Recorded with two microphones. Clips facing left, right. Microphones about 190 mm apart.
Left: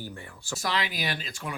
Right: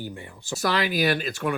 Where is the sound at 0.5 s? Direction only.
65° right (ahead or behind).